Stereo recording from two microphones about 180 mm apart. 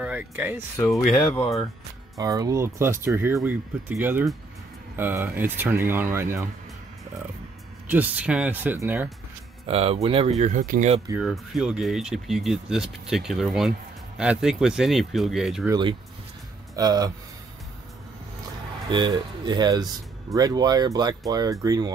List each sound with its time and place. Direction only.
0.0 s speech: 10° right (ahead or behind)
1.0 s speech: centre (ahead or behind)
2.1 s speech: 20° right (ahead or behind)
7.9 s speech: 10° right (ahead or behind)
9.7 s speech: 35° right (ahead or behind)
11.1 s speech: centre (ahead or behind)
15.7 s speech: 25° right (ahead or behind)
18.9 s speech: 25° right (ahead or behind)